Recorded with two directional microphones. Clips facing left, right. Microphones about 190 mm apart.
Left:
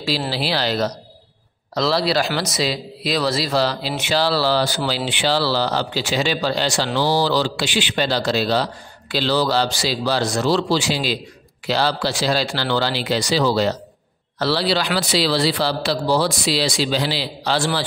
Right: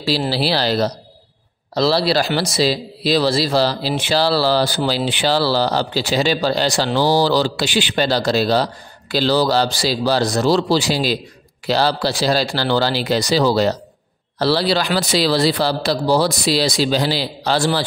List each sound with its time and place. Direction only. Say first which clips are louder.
0.3 s a man's voice: right 3 dB; 35° right (ahead or behind)